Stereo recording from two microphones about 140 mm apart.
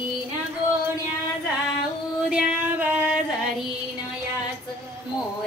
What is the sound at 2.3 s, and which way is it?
Music, 10° right (ahead or behind).